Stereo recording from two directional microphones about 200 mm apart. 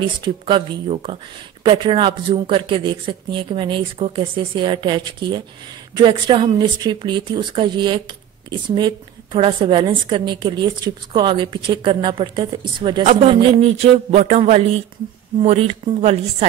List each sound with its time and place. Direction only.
0.2 s a woman's voice: 25° right (ahead or behind)